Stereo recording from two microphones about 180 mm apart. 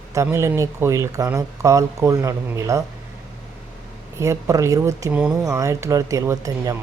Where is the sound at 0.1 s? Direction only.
15° right (ahead or behind).